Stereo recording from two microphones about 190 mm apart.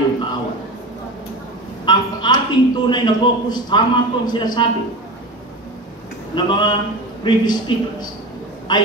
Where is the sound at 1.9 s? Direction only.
25° left (ahead or behind).